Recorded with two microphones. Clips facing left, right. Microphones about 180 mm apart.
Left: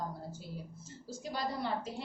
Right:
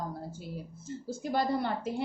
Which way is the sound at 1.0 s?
55° right (ahead or behind).